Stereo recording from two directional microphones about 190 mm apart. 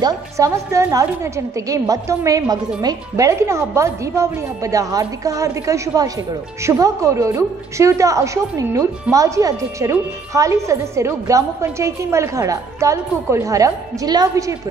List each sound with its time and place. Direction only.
0.0 s a woman's voice: 15° right (ahead or behind)